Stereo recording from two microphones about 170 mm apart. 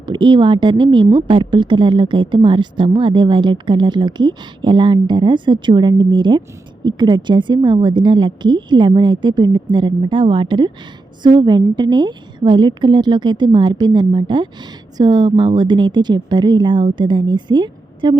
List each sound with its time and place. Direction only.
0.0 s a woman's voice: 25° right (ahead or behind)